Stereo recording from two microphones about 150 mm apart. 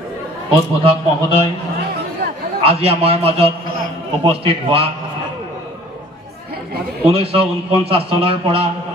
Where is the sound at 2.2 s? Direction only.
65° right (ahead or behind).